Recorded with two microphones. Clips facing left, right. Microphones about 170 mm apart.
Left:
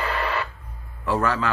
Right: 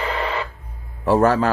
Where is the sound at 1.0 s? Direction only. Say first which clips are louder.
Right 7 dB; 40° right (ahead or behind).